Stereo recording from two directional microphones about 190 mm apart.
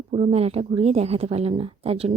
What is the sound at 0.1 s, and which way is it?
Speech, 30° right (ahead or behind).